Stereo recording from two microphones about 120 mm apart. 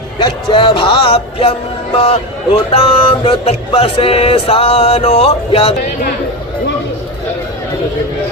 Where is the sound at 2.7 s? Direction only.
50° left (ahead or behind).